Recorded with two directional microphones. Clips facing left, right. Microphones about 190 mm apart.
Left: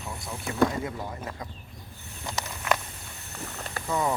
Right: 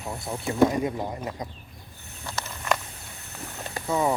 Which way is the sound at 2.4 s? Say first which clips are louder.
Even; 15° left (ahead or behind).